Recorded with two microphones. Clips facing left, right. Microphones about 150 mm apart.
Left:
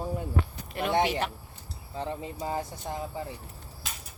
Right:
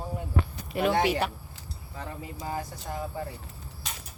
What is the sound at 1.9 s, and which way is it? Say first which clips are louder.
Speech: left 5 dB; 25° left (ahead or behind).